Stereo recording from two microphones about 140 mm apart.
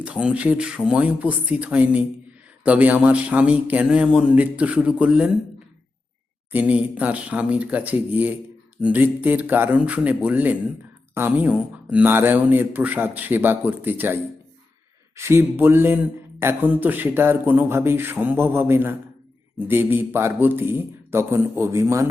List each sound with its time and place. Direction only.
0.0 s speech: 5° right (ahead or behind)
6.5 s speech: 10° right (ahead or behind)